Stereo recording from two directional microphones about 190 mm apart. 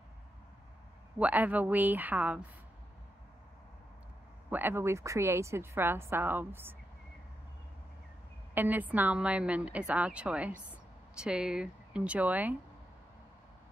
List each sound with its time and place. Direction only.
1.2 s a woman's voice: 10° right (ahead or behind)
4.5 s a woman's voice: 10° right (ahead or behind)
8.5 s a woman's voice: 10° right (ahead or behind)